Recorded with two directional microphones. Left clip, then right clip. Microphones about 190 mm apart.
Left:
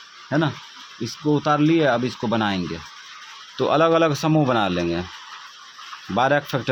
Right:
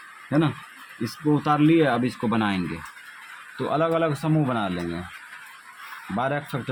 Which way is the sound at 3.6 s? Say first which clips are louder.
Left 6 dB; 30° left (ahead or behind).